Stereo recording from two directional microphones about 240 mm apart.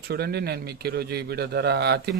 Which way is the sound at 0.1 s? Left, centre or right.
Right.